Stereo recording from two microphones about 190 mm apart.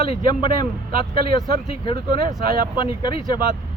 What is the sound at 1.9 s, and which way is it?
Speech, 25° left (ahead or behind).